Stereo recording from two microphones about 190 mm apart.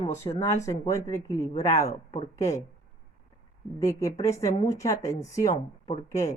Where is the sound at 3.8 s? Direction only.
15° left (ahead or behind).